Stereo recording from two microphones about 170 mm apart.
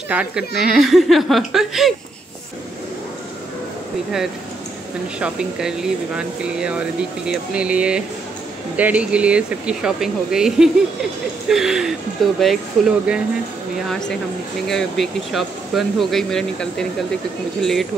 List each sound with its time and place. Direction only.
0.1 s speech: 5° right (ahead or behind)
5.2 s speech: 5° right (ahead or behind)